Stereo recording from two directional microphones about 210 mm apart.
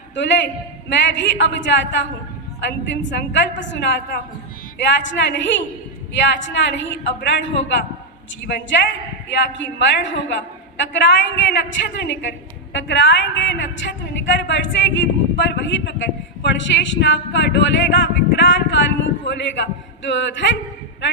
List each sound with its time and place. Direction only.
0.2 s a woman's voice: 60° left (ahead or behind)